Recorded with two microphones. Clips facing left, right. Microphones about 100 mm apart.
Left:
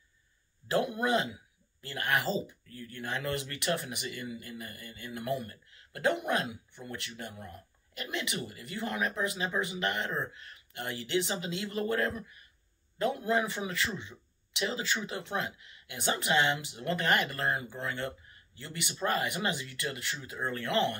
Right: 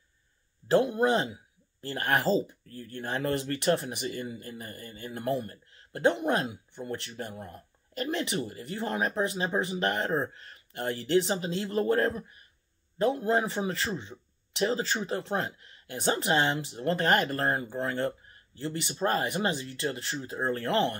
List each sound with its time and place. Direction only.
0.7 s speech: 30° right (ahead or behind)